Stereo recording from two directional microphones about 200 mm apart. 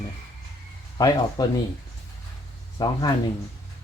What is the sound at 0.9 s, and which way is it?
Speech, 20° left (ahead or behind).